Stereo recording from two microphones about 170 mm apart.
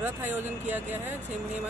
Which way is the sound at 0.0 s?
10° right (ahead or behind).